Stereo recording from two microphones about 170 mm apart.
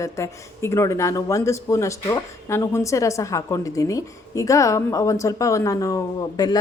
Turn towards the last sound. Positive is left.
turn(degrees=20)  # may be behind; listen again after turning